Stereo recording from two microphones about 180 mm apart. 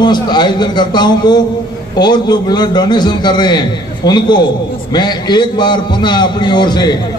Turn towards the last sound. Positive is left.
turn(degrees=25)  # may be behind; listen again after turning